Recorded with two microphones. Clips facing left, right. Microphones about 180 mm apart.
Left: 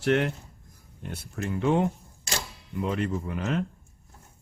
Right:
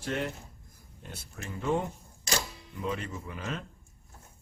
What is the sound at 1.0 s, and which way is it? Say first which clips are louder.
Speech: left 10 dB; 60° left (ahead or behind).